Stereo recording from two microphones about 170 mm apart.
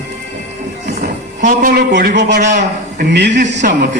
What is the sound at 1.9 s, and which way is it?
Speech, 85° right.